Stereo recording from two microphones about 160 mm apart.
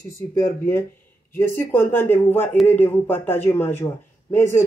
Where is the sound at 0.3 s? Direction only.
15° left (ahead or behind).